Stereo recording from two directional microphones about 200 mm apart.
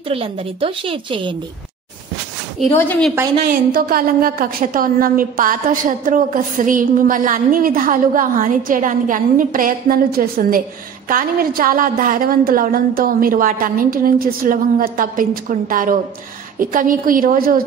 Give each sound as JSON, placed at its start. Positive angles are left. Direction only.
{"t": 0.1, "sound": "a woman's voice", "side_deg": -25}
{"t": 3.4, "sound": "a woman's voice", "side_deg": -45}